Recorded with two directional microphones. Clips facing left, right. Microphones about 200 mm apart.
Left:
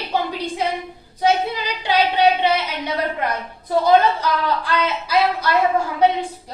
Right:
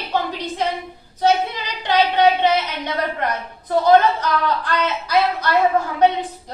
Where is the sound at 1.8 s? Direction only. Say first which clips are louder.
Right 1 dB; 10° left (ahead or behind).